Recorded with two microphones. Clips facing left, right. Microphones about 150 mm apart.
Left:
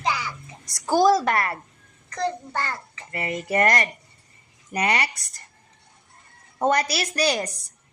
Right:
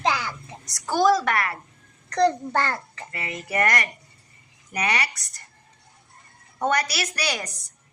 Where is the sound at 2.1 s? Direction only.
75° right (ahead or behind).